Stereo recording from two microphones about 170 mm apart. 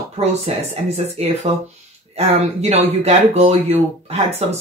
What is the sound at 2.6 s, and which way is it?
Speech, 40° right (ahead or behind).